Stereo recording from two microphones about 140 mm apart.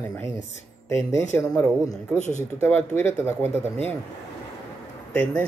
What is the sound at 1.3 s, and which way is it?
Speech, 15° left (ahead or behind).